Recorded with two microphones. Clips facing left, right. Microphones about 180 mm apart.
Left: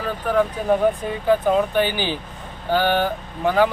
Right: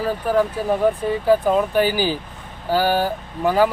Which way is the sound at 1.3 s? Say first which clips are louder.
Even; 40° right (ahead or behind).